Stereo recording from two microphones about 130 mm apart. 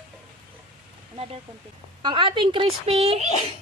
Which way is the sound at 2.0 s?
40° right (ahead or behind).